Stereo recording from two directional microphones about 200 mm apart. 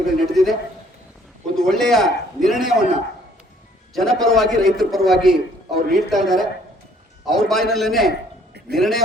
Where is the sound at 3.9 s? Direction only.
Centre (ahead or behind).